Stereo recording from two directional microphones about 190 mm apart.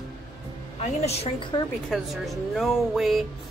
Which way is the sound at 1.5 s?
20° left (ahead or behind).